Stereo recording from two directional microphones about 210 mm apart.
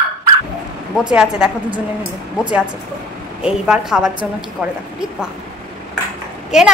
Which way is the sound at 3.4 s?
5° right (ahead or behind).